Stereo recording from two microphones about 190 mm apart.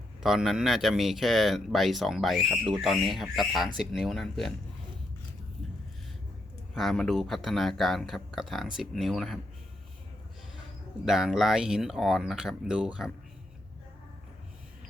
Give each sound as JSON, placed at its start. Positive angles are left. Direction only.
{"t": 0.2, "sound": "speech", "side_deg": 0}
{"t": 6.7, "sound": "speech", "side_deg": 0}
{"t": 11.0, "sound": "speech", "side_deg": 0}